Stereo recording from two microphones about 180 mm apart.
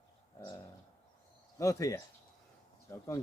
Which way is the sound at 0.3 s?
15° left (ahead or behind).